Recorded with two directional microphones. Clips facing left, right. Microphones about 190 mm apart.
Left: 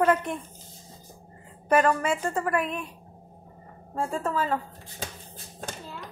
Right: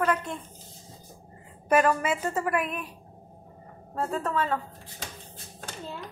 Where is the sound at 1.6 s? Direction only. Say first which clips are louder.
Left 1 dB; 5° right (ahead or behind).